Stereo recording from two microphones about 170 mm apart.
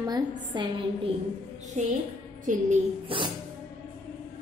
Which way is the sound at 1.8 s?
45° right (ahead or behind).